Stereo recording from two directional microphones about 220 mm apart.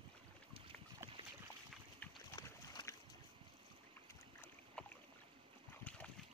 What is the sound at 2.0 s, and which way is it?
Boat, 15° left (ahead or behind).